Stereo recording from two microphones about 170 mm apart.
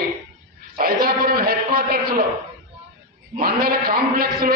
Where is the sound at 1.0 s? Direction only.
60° right (ahead or behind).